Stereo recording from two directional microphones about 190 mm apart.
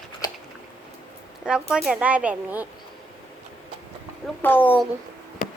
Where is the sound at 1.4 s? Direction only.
5° right (ahead or behind).